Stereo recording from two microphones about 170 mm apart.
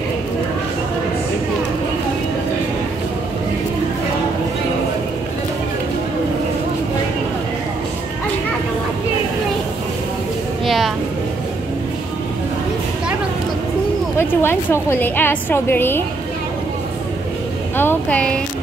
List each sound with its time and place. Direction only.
10.6 s a sound: centre (ahead or behind)
14.1 s a woman's voice: 15° left (ahead or behind)
17.7 s speech: 10° left (ahead or behind)